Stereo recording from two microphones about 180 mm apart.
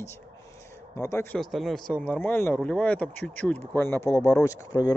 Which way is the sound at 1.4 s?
Centre (ahead or behind).